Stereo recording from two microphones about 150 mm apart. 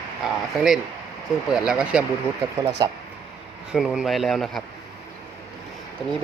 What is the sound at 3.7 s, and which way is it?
Speech, centre (ahead or behind).